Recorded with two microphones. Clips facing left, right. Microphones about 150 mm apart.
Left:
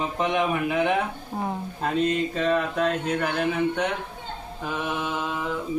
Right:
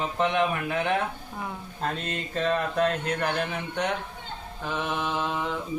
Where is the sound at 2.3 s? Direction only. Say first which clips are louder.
Left 2 dB; 5° left (ahead or behind).